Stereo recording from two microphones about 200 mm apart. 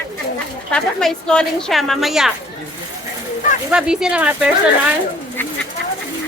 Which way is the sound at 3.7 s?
5° right (ahead or behind).